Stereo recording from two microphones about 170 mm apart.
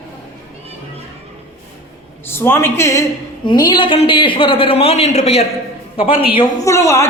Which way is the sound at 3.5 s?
25° left (ahead or behind).